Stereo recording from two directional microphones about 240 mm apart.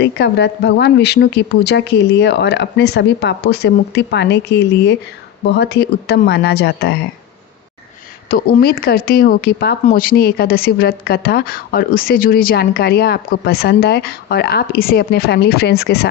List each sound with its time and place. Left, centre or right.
0.0 s a woman's voice: left
8.3 s speech: left